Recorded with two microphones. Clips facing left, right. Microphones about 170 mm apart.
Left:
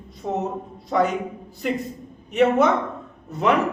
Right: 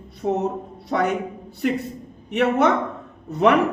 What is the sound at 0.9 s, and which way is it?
Speech, 70° right (ahead or behind).